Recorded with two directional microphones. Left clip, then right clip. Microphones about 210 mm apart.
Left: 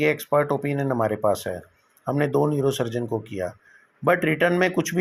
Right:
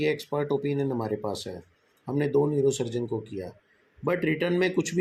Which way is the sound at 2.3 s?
45° left (ahead or behind).